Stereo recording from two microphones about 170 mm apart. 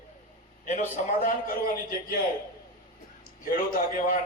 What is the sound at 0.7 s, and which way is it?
A man's voice, 50° left (ahead or behind).